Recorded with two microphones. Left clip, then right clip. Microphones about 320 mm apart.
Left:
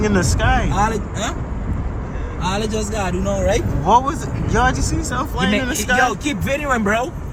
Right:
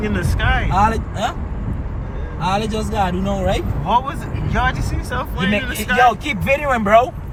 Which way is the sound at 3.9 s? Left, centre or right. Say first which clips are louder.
Left 3 dB; centre.